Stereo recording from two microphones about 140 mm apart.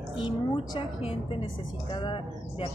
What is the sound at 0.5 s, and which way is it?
A woman's voice, 40° left (ahead or behind).